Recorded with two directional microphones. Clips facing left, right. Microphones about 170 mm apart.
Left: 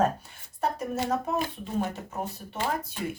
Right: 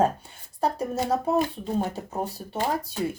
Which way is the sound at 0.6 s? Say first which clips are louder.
Right 3 dB; 35° right (ahead or behind).